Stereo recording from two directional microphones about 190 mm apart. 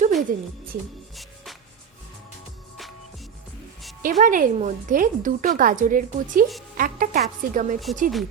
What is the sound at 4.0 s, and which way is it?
Speech, 45° right (ahead or behind).